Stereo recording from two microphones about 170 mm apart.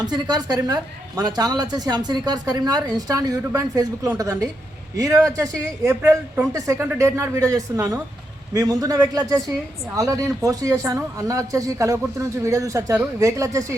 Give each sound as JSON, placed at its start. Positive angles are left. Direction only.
{"t": 0.0, "sound": "a man's voice", "side_deg": -25}